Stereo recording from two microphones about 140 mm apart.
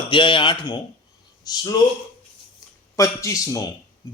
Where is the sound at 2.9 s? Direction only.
20° left (ahead or behind).